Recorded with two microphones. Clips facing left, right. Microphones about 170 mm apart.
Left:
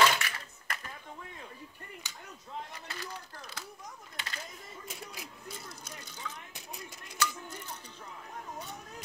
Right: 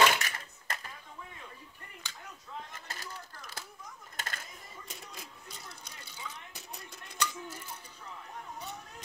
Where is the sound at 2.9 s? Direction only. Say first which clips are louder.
Left 2 dB; 45° right (ahead or behind).